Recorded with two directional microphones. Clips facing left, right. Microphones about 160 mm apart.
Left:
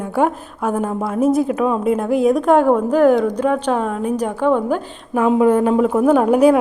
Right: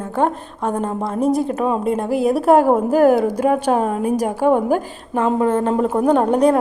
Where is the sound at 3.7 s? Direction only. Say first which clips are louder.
Right 2 dB; 45° right (ahead or behind).